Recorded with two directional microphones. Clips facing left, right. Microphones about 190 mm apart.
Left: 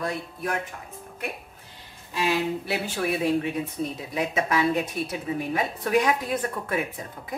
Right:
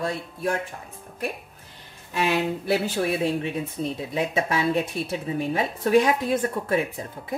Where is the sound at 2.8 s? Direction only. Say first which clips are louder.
Right 1 dB; 35° right (ahead or behind).